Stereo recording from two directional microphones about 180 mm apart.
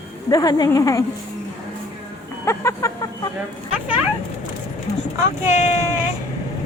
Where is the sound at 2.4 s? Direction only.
15° left (ahead or behind).